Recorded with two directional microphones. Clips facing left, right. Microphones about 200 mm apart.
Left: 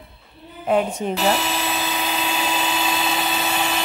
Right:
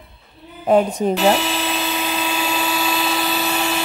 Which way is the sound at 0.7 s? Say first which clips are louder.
Right 5 dB; 35° right (ahead or behind).